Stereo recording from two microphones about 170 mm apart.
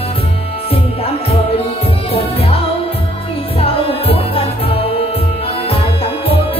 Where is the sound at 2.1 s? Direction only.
35° left (ahead or behind).